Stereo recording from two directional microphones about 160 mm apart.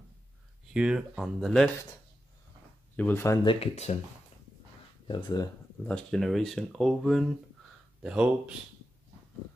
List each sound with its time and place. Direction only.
0.7 s speech: 5° right (ahead or behind)
3.0 s speech: 15° left (ahead or behind)
3.4 s speech: 40° left (ahead or behind)
5.0 s speech: 25° left (ahead or behind)
5.9 s speech: 5° left (ahead or behind)